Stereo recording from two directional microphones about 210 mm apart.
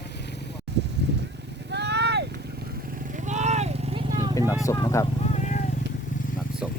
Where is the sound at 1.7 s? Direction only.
55° right (ahead or behind).